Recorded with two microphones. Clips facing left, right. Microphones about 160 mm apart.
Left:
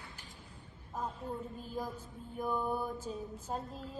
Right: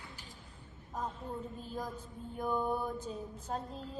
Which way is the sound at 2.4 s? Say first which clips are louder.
Right 1 dB; 5° left (ahead or behind).